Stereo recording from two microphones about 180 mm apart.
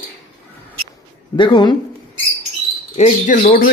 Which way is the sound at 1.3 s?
25° left (ahead or behind).